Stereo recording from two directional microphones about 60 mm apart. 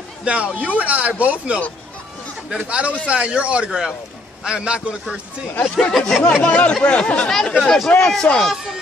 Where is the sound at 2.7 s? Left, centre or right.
Centre.